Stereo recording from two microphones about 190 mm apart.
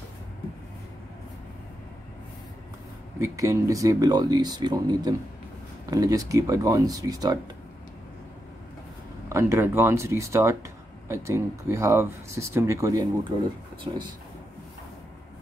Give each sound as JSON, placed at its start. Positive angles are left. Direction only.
{"t": 3.2, "sound": "speech", "side_deg": -15}
{"t": 9.3, "sound": "speech", "side_deg": -15}